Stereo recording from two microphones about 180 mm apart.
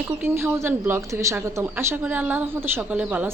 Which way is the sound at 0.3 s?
15° right (ahead or behind).